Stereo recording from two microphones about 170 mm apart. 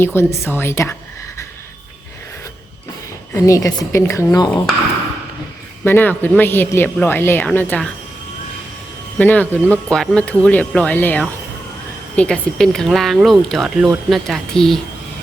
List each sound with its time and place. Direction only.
0.0 s speech: 15° left (ahead or behind)
3.3 s speech: 20° left (ahead or behind)
5.8 s speech: 10° left (ahead or behind)
9.1 s speech: 10° left (ahead or behind)